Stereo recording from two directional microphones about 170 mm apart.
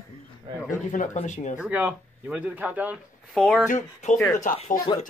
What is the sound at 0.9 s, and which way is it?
Speech, 45° left (ahead or behind).